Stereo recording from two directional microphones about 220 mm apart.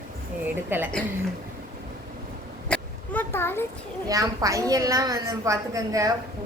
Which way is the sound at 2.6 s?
5° left (ahead or behind).